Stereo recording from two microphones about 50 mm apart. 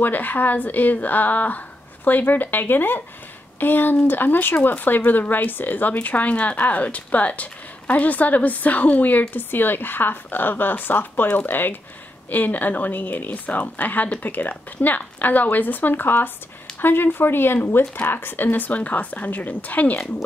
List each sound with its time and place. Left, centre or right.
0.0 s a woman's voice: left
9.3 s a woman's voice: left